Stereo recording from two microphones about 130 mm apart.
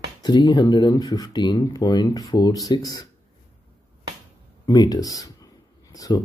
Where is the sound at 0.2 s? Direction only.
35° left (ahead or behind).